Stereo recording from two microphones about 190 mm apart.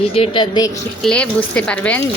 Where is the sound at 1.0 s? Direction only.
5° left (ahead or behind).